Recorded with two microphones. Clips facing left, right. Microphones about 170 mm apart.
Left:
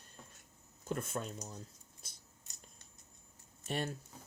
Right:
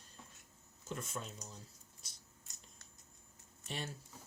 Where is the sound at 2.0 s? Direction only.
55° left (ahead or behind).